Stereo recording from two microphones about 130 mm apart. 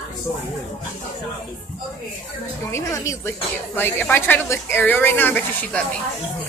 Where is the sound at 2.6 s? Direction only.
25° left (ahead or behind).